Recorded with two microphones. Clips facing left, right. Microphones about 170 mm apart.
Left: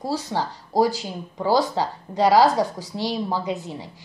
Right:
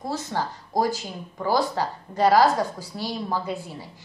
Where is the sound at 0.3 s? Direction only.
15° left (ahead or behind).